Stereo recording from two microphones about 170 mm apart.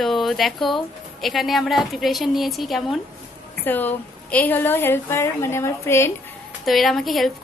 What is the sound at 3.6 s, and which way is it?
A woman's voice, 10° left (ahead or behind).